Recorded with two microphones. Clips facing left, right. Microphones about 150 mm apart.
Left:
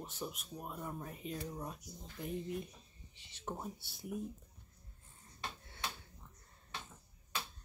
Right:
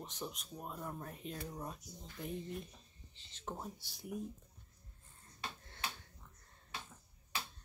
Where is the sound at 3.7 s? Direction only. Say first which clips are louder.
Left 1 dB; 55° left (ahead or behind).